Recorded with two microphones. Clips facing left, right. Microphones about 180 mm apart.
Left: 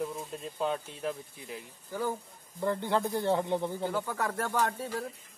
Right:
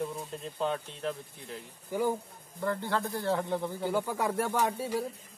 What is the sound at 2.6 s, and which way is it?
Speech, 20° left (ahead or behind).